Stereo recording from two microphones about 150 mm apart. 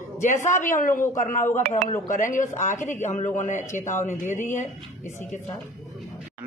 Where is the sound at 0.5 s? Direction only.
60° left (ahead or behind).